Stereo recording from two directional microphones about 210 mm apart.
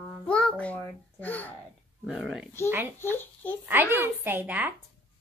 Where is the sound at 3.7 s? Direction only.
10° right (ahead or behind).